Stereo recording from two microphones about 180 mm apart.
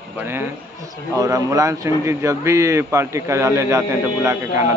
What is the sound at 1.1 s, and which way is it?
A man's voice, 20° right (ahead or behind).